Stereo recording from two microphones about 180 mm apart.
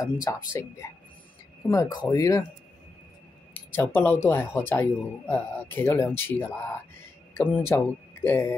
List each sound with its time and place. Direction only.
0.0 s speech: 20° left (ahead or behind)
3.5 s speech: 10° left (ahead or behind)